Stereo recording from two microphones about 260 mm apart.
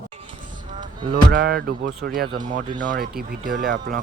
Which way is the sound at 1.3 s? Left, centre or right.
Right.